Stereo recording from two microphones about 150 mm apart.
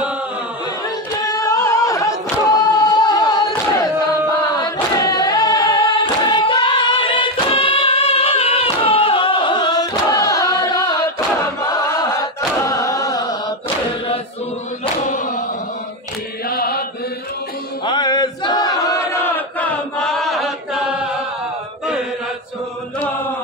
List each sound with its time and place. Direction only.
1.2 s singing: 25° left (ahead or behind)
2.7 s a sound: 25° left (ahead or behind)
4.9 s singing: 25° left (ahead or behind)
10.7 s choir: 30° left (ahead or behind)
16.4 s mantra: 90° left
17.8 s chant: 30° left (ahead or behind); by 21.1 s 5° right (ahead or behind)